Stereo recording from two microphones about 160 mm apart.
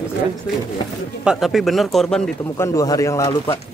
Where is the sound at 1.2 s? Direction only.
5° right (ahead or behind).